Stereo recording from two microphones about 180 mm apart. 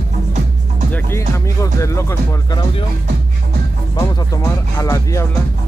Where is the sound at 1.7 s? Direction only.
15° left (ahead or behind).